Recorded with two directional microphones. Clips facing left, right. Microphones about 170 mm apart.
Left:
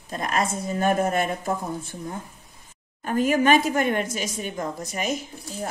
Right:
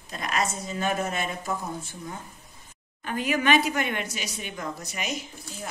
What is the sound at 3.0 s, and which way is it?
A woman's voice, 45° left (ahead or behind).